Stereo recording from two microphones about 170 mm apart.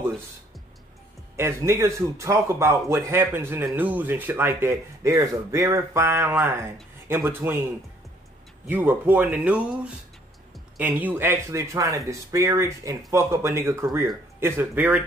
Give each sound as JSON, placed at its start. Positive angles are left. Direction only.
{"t": 1.3, "sound": "a man's voice", "side_deg": -15}
{"t": 8.6, "sound": "a man's voice", "side_deg": -10}